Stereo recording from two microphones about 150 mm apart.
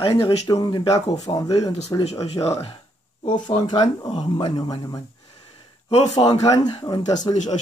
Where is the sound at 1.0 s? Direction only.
45° left (ahead or behind).